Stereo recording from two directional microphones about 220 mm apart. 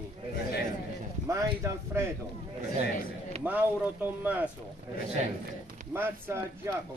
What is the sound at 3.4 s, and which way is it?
Speech, 10° right (ahead or behind).